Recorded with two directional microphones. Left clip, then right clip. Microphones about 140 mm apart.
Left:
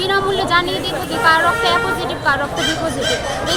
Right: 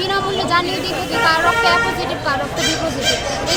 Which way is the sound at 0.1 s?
10° left (ahead or behind).